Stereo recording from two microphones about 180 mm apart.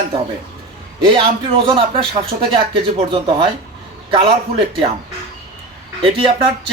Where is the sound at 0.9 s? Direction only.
25° right (ahead or behind).